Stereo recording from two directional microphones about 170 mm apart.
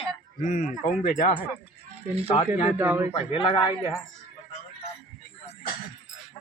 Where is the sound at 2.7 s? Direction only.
10° right (ahead or behind).